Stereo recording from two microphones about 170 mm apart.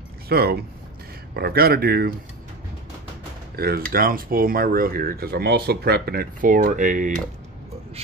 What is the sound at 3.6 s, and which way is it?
Speech, 65° right (ahead or behind).